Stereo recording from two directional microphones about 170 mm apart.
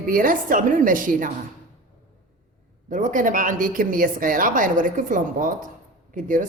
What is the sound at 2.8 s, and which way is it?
A woman's voice, 50° right (ahead or behind).